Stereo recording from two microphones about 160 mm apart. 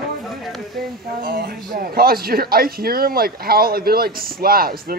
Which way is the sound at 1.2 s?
65° right (ahead or behind).